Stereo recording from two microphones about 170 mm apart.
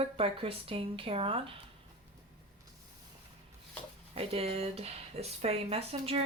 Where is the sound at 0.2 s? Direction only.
35° right (ahead or behind).